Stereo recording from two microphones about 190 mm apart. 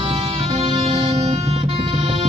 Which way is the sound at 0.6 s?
30° right (ahead or behind).